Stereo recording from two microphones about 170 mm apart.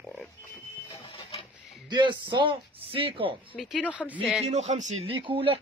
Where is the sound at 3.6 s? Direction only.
5° right (ahead or behind).